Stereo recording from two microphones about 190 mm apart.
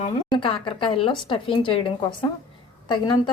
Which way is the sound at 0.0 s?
25° left (ahead or behind).